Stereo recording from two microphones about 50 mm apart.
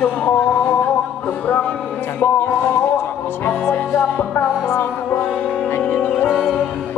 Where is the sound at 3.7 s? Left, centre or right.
Left.